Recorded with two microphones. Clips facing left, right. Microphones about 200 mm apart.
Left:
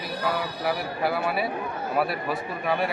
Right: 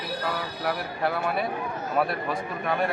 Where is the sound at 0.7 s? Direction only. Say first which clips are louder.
Left 1 dB; 5° left (ahead or behind).